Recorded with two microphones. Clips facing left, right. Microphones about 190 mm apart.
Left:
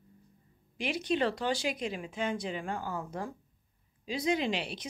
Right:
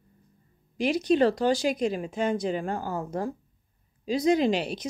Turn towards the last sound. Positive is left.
turn(degrees=-40)  # may be behind; listen again after turning